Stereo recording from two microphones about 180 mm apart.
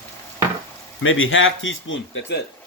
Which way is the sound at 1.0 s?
90° left.